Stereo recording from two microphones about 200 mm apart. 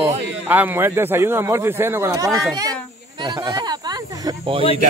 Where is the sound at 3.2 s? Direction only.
20° right (ahead or behind).